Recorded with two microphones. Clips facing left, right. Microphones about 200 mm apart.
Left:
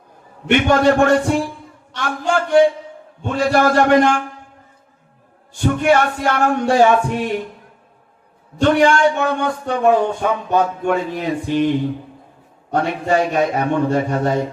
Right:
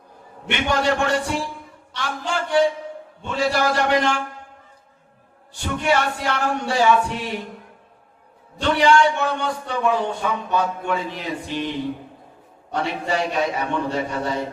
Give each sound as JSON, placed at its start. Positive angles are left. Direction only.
{"t": 0.4, "sound": "a man's voice", "side_deg": 50}
{"t": 5.5, "sound": "a man's voice", "side_deg": 50}
{"t": 8.5, "sound": "a man's voice", "side_deg": 50}